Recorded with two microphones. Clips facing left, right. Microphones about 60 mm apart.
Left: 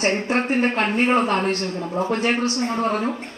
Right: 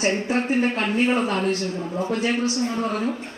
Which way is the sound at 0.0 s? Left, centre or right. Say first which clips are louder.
Left 1 dB; left.